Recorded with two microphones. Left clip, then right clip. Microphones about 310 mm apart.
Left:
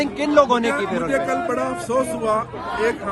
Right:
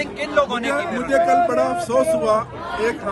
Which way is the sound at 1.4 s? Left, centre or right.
Centre.